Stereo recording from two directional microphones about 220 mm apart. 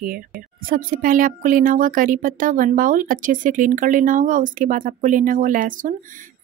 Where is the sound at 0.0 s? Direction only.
40° right (ahead or behind).